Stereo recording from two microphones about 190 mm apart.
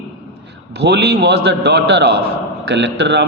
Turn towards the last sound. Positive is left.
turn(degrees=-65)  # may be behind; listen again after turning